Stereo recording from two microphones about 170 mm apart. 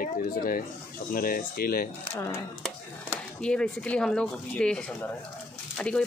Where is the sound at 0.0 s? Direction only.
55° left (ahead or behind).